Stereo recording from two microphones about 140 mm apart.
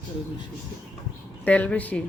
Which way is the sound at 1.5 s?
10° left (ahead or behind).